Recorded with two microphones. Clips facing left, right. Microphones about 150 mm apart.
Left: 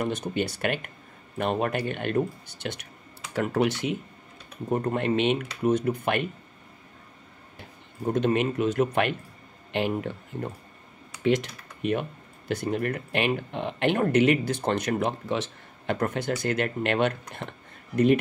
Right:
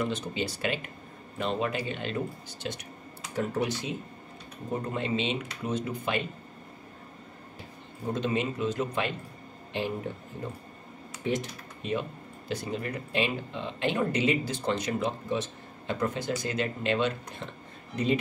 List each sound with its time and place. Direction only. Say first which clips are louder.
0.0 s speech: left 3 dB; 55° left (ahead or behind)
3.3 s speech: left 5 dB; 75° left (ahead or behind); by 6.2 s 60° left (ahead or behind)
8.1 s speech: left 5 dB; 60° left (ahead or behind)
11.2 s speech: left 6 dB; 75° left (ahead or behind); by 18.1 s 60° left (ahead or behind)